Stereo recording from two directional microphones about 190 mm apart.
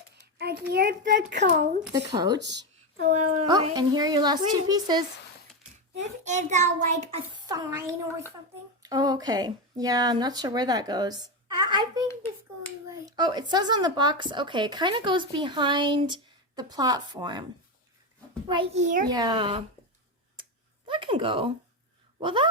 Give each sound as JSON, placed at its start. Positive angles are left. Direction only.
{"t": 0.7, "sound": "a child's voice", "side_deg": -55}
{"t": 2.0, "sound": "speech", "side_deg": -20}
{"t": 2.4, "sound": "a child's voice", "side_deg": -65}
{"t": 3.0, "sound": "a child's voice", "side_deg": -40}
{"t": 3.4, "sound": "speech", "side_deg": -25}
{"t": 6.0, "sound": "a child's voice", "side_deg": -40}
{"t": 7.4, "sound": "speech", "side_deg": -15}
{"t": 18.4, "sound": "speech", "side_deg": -25}
{"t": 18.8, "sound": "a child's voice", "side_deg": -40}
{"t": 19.0, "sound": "speech", "side_deg": -20}
{"t": 20.8, "sound": "speech", "side_deg": -25}